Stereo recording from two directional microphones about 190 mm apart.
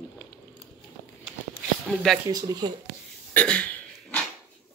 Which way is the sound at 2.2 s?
20° right (ahead or behind).